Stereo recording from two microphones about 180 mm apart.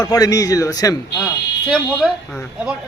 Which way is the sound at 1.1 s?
Centre (ahead or behind).